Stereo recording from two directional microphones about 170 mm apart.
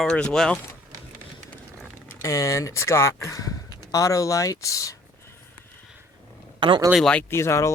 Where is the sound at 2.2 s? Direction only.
15° left (ahead or behind).